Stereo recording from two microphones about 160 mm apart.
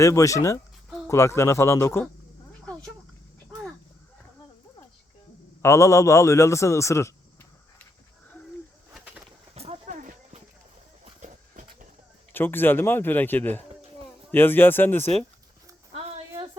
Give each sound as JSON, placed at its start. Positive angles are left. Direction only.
{"t": 0.0, "sound": "a man's voice", "side_deg": 20}
{"t": 5.6, "sound": "a man's voice", "side_deg": 20}
{"t": 9.0, "sound": "bird", "side_deg": -5}
{"t": 9.6, "sound": "horse", "side_deg": -45}
{"t": 11.0, "sound": "a sound", "side_deg": -50}
{"t": 12.3, "sound": "a man's voice", "side_deg": 15}
{"t": 16.1, "sound": "a sound", "side_deg": -35}